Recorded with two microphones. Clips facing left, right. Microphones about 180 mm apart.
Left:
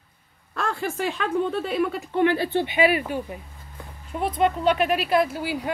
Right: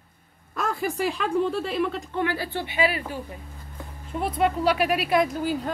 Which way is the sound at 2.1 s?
25° left (ahead or behind).